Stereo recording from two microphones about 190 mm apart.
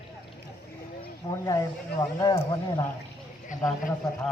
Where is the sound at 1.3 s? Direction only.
15° left (ahead or behind).